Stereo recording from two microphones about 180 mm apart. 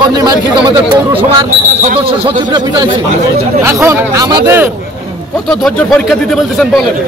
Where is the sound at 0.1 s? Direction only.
20° right (ahead or behind).